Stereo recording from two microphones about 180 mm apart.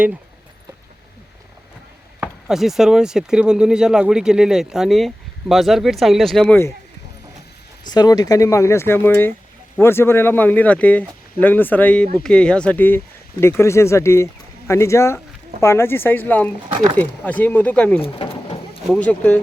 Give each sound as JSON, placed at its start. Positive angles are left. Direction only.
{"t": 2.2, "sound": "speech", "side_deg": 0}
{"t": 7.9, "sound": "speech", "side_deg": 20}
{"t": 18.0, "sound": "bird", "side_deg": 30}
{"t": 18.9, "sound": "speech", "side_deg": 5}